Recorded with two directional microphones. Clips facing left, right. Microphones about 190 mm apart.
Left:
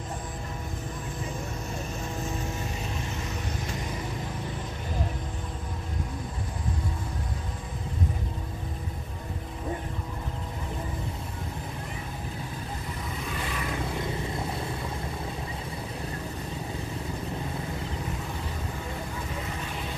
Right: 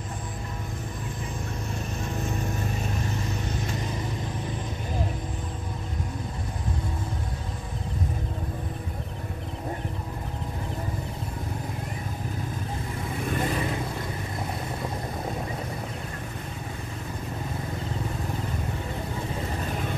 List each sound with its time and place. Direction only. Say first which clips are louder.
13.3 s vehicle: right 9 dB; 45° right (ahead or behind)